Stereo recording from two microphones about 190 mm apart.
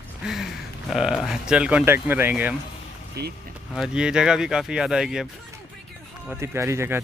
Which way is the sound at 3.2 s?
55° right (ahead or behind).